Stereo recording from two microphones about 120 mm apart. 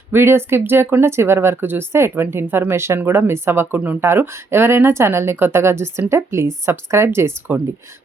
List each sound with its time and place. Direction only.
0.1 s speech: 20° right (ahead or behind)